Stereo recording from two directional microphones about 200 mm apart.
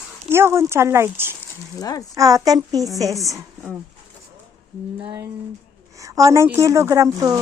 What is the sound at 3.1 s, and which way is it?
Speech, centre (ahead or behind).